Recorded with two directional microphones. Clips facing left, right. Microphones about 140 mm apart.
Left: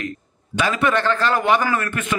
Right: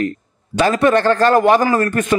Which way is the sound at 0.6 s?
40° right (ahead or behind).